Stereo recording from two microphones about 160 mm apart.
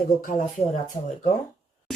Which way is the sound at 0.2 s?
55° left (ahead or behind).